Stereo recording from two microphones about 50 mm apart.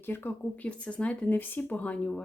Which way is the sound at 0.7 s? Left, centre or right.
Left.